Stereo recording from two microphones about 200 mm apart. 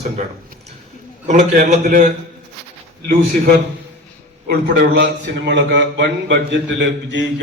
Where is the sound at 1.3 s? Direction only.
35° right (ahead or behind).